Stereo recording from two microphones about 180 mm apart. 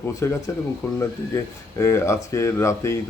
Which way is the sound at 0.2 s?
15° left (ahead or behind).